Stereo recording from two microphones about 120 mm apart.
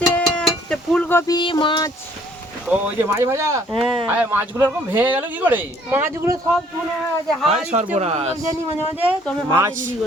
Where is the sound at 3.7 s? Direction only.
50° right (ahead or behind).